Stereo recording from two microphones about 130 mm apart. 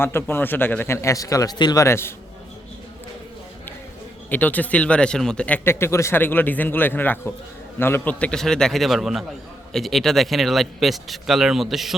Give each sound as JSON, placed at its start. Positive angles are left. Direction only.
{"t": 0.0, "sound": "speech", "side_deg": 15}
{"t": 4.3, "sound": "speech", "side_deg": 10}